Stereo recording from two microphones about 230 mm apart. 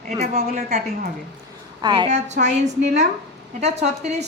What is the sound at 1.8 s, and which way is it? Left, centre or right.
Speech, centre.